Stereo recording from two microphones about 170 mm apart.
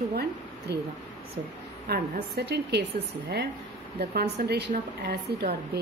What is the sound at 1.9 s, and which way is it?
Speech, 70° right (ahead or behind).